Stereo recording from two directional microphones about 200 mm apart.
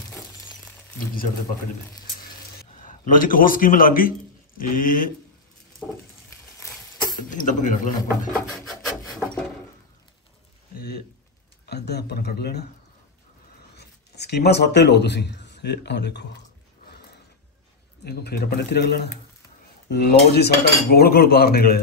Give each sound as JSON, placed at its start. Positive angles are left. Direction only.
{"t": 0.9, "sound": "cutlery", "side_deg": 45}
{"t": 2.8, "sound": "a man's voice", "side_deg": 45}
{"t": 4.6, "sound": "cutlery", "side_deg": 45}
{"t": 6.6, "sound": "a sound", "side_deg": 20}
{"t": 7.2, "sound": "speech", "side_deg": 40}
{"t": 8.3, "sound": "a sound", "side_deg": 0}
{"t": 11.7, "sound": "cutlery", "side_deg": 55}
{"t": 13.7, "sound": "speech", "side_deg": 55}
{"t": 18.0, "sound": "cutlery", "side_deg": 50}